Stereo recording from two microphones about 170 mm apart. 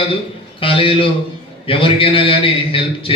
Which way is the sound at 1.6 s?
30° left (ahead or behind).